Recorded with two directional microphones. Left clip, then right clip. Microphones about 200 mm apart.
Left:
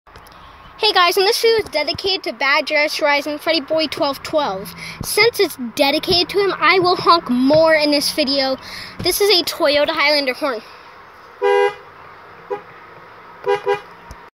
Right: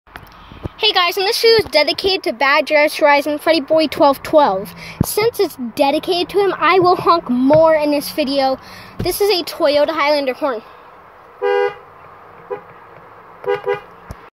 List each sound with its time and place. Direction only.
0.7 s a woman's voice: 30° left (ahead or behind)
1.5 s speech: 15° right (ahead or behind)
5.1 s speech: 5° left (ahead or behind)
9.6 s speech: 5° right (ahead or behind)